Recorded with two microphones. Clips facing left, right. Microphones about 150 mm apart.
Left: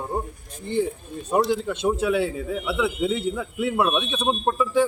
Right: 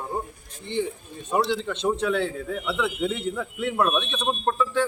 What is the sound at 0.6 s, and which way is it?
Speech, 40° left (ahead or behind).